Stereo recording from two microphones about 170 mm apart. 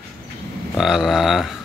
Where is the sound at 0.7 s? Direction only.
Centre (ahead or behind).